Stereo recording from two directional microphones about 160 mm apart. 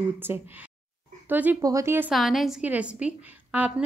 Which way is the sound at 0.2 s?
15° right (ahead or behind).